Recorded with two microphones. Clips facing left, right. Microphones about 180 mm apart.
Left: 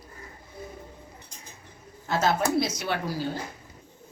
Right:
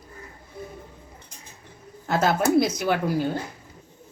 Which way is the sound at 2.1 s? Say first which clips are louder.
Right 4 dB; 55° right (ahead or behind).